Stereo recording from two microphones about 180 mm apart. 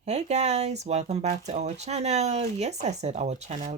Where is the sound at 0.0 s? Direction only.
40° right (ahead or behind).